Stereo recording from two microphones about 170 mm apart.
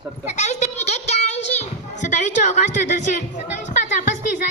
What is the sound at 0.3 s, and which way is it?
Child singing, 40° left (ahead or behind).